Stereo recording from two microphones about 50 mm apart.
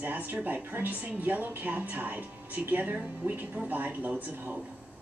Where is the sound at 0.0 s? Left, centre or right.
Right.